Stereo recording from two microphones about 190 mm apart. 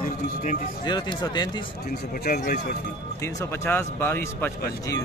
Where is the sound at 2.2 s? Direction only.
50° left (ahead or behind).